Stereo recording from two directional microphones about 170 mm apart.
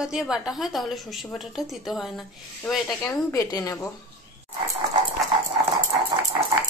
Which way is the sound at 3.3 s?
20° left (ahead or behind).